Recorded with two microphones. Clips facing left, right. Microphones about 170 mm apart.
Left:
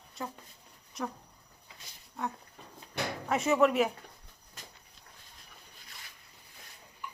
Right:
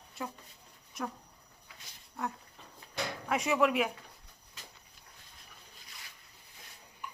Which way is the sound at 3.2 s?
Centre (ahead or behind).